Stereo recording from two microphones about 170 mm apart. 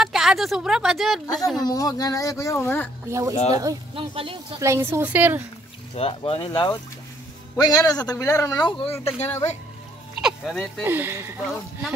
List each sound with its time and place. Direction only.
0.0 s speech: centre (ahead or behind)
1.2 s speech: 20° left (ahead or behind)
3.1 s a woman's voice: 20° right (ahead or behind)
3.9 s speech: 30° right (ahead or behind)
4.6 s a woman's voice: 15° right (ahead or behind)
5.9 s speech: 35° left (ahead or behind); by 8.6 s 15° left (ahead or behind)
8.6 s speech: 30° left (ahead or behind)
10.2 s a sound: centre (ahead or behind)
10.8 s a woman's voice: 10° right (ahead or behind)